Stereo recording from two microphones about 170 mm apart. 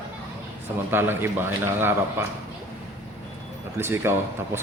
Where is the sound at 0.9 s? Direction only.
15° right (ahead or behind).